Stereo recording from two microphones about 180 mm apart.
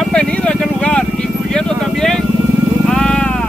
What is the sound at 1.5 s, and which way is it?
Vehicle, 5° left (ahead or behind).